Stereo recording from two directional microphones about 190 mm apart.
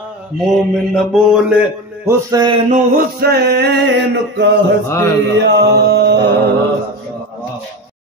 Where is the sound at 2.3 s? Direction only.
25° right (ahead or behind).